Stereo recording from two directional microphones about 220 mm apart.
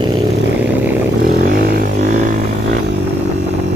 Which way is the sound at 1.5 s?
40° right (ahead or behind).